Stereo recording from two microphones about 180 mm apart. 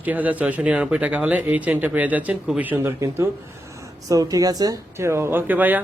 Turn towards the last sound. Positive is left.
turn(degrees=-10)  # may be behind; listen again after turning